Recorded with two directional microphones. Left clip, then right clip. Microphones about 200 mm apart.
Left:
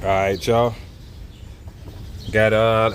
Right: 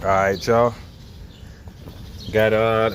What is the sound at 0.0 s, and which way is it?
Speech, 15° left (ahead or behind).